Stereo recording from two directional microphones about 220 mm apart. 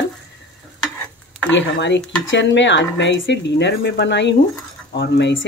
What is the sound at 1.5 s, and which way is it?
Speech, 55° left (ahead or behind).